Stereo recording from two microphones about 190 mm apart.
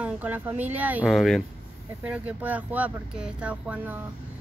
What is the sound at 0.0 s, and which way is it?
A woman's voice, 10° right (ahead or behind).